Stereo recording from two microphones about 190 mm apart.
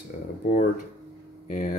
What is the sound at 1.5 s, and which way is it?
Speech, 40° left (ahead or behind).